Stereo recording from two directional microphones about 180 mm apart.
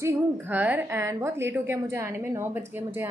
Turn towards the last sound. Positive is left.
turn(degrees=-10)  # may be behind; listen again after turning